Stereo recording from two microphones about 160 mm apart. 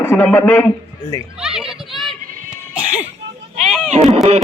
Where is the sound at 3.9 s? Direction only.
40° right (ahead or behind).